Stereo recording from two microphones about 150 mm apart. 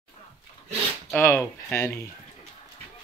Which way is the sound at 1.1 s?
15° left (ahead or behind).